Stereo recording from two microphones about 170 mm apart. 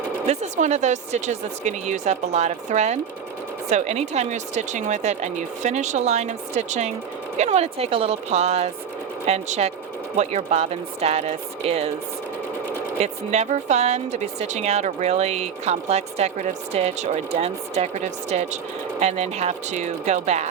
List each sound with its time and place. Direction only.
0.3 s speech: 45° right (ahead or behind)
13.0 s speech: 40° right (ahead or behind)